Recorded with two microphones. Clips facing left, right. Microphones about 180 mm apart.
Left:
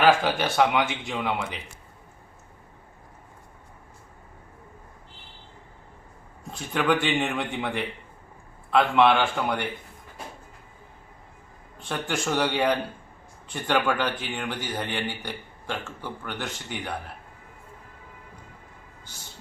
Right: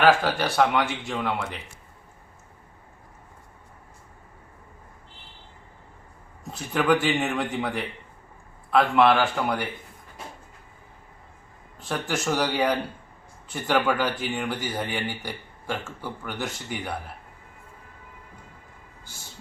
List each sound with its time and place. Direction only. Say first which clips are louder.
0.0 s speech: even; centre (ahead or behind)
6.5 s speech: right 2 dB; 5° right (ahead or behind)
11.8 s speech: right 1 dB; 5° right (ahead or behind)